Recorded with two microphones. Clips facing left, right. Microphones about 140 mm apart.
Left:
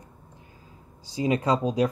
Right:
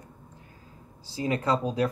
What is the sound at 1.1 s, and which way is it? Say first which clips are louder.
Speech: left 3 dB; 20° left (ahead or behind).